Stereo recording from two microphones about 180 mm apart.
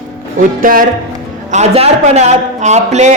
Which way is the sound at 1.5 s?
35° right (ahead or behind).